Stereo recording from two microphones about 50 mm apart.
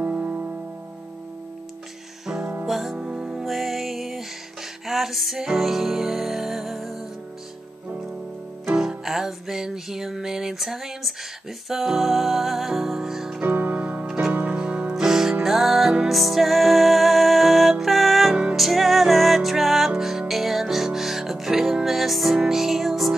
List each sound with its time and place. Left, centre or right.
0.0 s music: right
2.6 s music: centre
3.0 s music: centre
3.4 s music: centre
8.6 s music: centre
13.4 s music: right
15.0 s music: centre
18.3 s music: right
18.6 s music: centre